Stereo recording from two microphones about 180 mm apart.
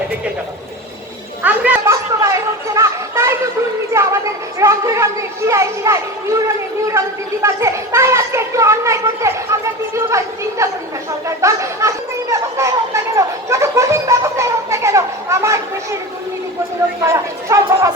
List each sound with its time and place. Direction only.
1.4 s chatter: 10° right (ahead or behind)
4.6 s a child's voice: 15° right (ahead or behind)
7.4 s a child's voice: 15° right (ahead or behind)
11.3 s chatter: 15° right (ahead or behind)
17.0 s speech: 15° right (ahead or behind)